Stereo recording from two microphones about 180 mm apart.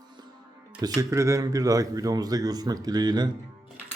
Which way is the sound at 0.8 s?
20° right (ahead or behind).